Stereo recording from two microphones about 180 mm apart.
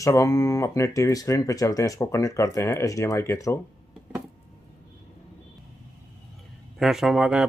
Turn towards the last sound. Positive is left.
turn(degrees=-5)  # may be behind; listen again after turning